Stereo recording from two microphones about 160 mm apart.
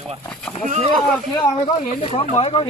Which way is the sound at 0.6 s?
50° right (ahead or behind).